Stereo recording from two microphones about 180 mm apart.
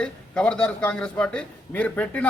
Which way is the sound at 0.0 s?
5° left (ahead or behind).